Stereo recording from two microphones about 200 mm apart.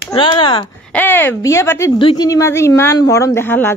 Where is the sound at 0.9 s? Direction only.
10° left (ahead or behind).